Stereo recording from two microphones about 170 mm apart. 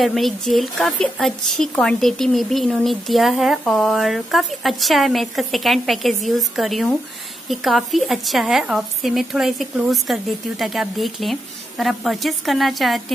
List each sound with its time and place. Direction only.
0.0 s speech: centre (ahead or behind)